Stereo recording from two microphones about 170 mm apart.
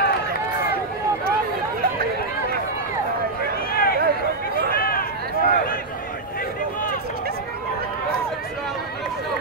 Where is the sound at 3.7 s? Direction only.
60° left (ahead or behind).